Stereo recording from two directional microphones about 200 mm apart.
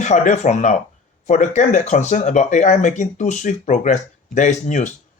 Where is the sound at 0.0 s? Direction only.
35° left (ahead or behind).